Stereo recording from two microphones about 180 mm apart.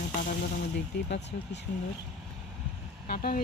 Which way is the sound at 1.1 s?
75° left (ahead or behind).